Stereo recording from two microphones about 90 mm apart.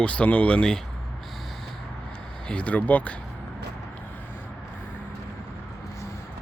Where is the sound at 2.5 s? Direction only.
15° left (ahead or behind).